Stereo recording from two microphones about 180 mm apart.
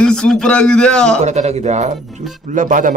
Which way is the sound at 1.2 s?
40° right (ahead or behind).